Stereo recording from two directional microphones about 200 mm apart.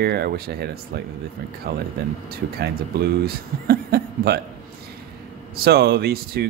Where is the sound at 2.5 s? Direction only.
50° right (ahead or behind).